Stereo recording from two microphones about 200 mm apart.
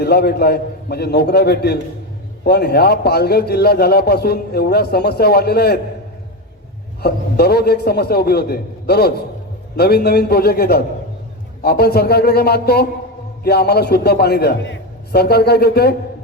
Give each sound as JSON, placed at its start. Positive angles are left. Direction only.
{"t": 0.0, "sound": "a man's voice", "side_deg": 55}
{"t": 7.0, "sound": "a man's voice", "side_deg": 50}